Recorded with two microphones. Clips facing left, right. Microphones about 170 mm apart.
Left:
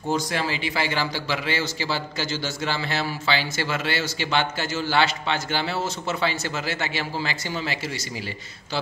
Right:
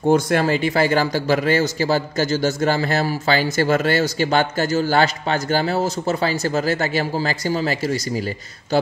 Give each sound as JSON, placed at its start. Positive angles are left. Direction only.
{"t": 0.1, "sound": "a man's voice", "side_deg": -50}